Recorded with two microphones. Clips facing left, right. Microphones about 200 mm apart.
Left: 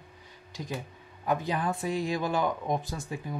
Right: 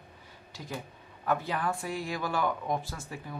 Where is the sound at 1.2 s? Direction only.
15° left (ahead or behind).